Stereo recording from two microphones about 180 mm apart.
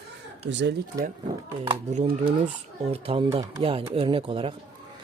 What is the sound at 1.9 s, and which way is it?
Speech, 35° right (ahead or behind).